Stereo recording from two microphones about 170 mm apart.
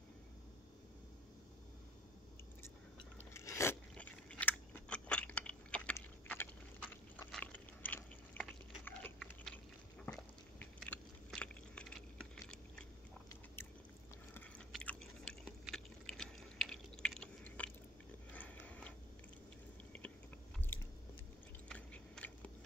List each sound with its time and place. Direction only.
3.3 s biting: 15° left (ahead or behind)
14.7 s chewing: 5° left (ahead or behind)
18.3 s dog: 10° left (ahead or behind)
20.7 s biting: 10° left (ahead or behind)